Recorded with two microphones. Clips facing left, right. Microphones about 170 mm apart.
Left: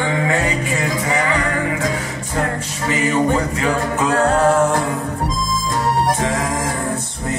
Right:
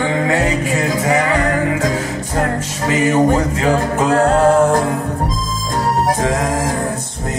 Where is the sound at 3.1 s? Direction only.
40° right (ahead or behind).